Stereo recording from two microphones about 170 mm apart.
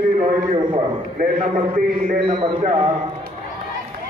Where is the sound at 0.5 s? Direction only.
30° right (ahead or behind).